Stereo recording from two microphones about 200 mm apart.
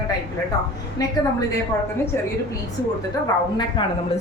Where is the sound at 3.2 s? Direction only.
20° left (ahead or behind).